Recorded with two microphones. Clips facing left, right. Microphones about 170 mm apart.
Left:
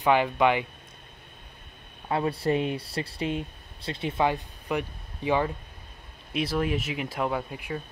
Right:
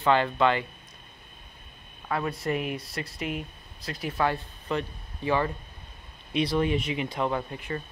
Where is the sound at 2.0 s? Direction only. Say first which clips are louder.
Left 3 dB; 30° left (ahead or behind).